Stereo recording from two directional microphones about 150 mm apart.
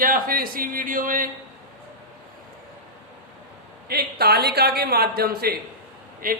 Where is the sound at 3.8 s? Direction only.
90° right.